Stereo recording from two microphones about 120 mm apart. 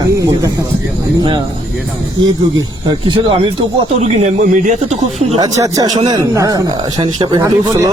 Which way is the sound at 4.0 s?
65° right (ahead or behind).